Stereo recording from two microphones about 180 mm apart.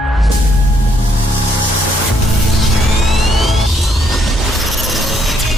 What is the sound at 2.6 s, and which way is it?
Music, centre (ahead or behind).